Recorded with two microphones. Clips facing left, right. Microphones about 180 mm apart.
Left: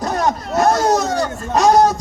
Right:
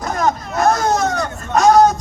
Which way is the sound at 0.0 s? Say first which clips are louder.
Even; 35° left (ahead or behind).